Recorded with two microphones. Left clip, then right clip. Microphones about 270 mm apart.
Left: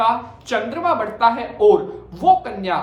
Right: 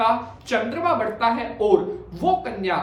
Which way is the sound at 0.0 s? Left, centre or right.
Centre.